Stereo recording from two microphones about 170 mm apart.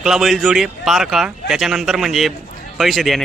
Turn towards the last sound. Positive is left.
turn(degrees=0)  # may be behind; listen again after turning